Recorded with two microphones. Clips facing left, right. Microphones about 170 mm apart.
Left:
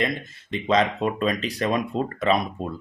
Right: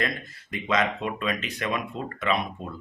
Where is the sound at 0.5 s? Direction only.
30° left (ahead or behind).